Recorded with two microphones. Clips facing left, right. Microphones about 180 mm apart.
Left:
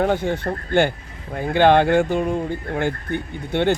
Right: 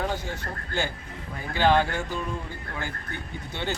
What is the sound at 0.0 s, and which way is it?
Speech, 60° left (ahead or behind).